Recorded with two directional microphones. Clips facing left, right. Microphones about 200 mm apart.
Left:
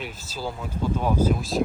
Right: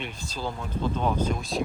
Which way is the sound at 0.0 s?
5° left (ahead or behind).